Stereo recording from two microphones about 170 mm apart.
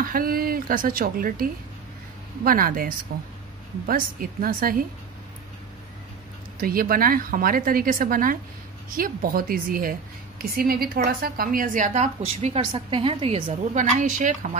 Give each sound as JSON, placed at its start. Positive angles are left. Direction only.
{"t": 0.0, "sound": "a woman's voice", "side_deg": -60}
{"t": 6.6, "sound": "a woman's voice", "side_deg": -60}